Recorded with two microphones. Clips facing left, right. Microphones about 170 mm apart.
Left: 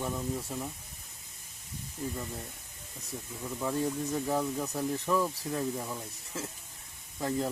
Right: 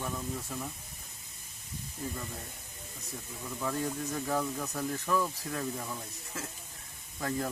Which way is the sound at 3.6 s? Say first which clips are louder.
Left 3 dB; 20° left (ahead or behind).